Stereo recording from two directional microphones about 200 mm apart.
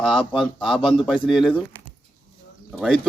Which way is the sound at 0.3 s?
Centre (ahead or behind).